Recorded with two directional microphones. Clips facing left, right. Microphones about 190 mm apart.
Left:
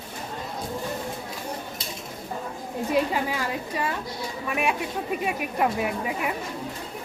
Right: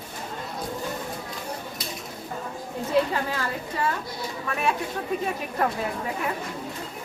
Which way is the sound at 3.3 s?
15° left (ahead or behind).